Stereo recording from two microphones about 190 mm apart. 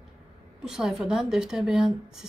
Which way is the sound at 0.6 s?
5° right (ahead or behind).